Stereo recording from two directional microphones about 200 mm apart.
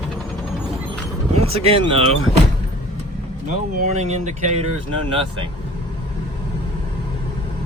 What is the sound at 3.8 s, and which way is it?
Speech, 35° right (ahead or behind).